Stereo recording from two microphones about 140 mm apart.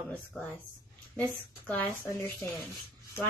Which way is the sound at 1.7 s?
15° left (ahead or behind).